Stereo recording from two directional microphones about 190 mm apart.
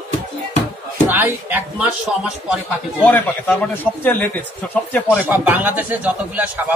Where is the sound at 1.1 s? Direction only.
10° right (ahead or behind).